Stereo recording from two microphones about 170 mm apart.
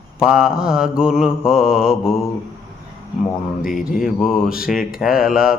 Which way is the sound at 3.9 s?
Centre (ahead or behind).